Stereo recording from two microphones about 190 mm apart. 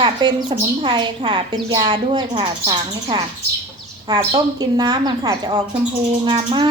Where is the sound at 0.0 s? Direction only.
20° right (ahead or behind).